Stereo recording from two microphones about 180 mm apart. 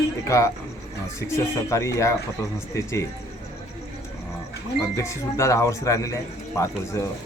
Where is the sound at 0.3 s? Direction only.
15° left (ahead or behind).